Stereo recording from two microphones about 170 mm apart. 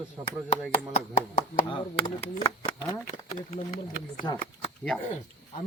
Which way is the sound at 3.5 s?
45° left (ahead or behind).